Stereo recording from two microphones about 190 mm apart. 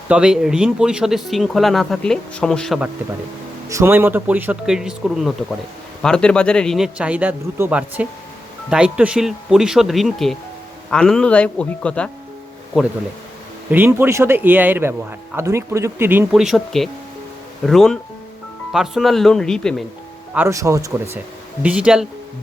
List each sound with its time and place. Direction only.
0.1 s speech: 5° right (ahead or behind)
3.7 s speech: 15° right (ahead or behind); by 12.1 s 5° left (ahead or behind)
13.7 s speech: 10° right (ahead or behind)
20.3 s speech: 15° right (ahead or behind)